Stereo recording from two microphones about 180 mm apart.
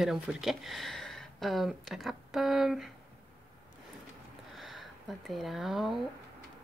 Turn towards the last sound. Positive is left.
turn(degrees=0)  # may be behind; listen again after turning